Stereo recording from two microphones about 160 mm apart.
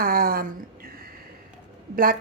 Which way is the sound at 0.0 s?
65° right (ahead or behind).